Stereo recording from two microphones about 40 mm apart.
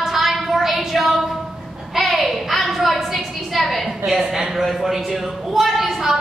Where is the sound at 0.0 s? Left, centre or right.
Centre.